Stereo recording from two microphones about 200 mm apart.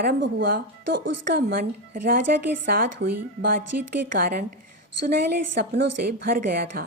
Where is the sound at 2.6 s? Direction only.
45° right (ahead or behind).